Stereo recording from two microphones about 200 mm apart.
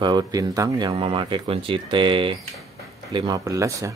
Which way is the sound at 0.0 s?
20° right (ahead or behind).